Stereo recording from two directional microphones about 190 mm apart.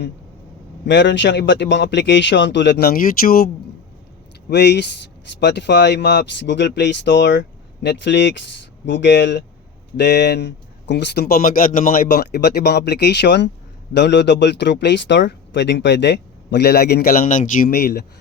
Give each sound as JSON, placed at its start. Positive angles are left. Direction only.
{"t": 0.9, "sound": "a man's voice", "side_deg": 70}
{"t": 4.4, "sound": "speech", "side_deg": 60}